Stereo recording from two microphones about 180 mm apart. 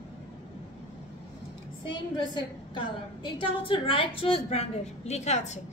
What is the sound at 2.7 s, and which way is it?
A woman's voice, 30° left (ahead or behind).